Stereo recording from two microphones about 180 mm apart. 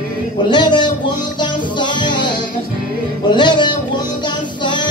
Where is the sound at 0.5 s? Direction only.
25° left (ahead or behind).